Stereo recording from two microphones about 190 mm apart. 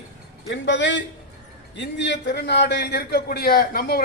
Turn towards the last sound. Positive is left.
turn(degrees=50)  # may be behind; listen again after turning